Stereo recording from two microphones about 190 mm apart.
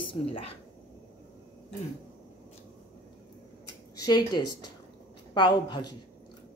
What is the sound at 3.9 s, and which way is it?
A woman's voice, 20° left (ahead or behind).